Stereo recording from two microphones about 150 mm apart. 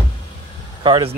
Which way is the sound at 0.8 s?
35° right (ahead or behind).